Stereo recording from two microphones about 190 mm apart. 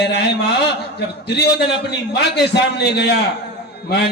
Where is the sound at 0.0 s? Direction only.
60° left (ahead or behind).